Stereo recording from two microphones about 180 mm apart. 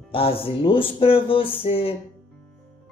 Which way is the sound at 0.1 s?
30° left (ahead or behind).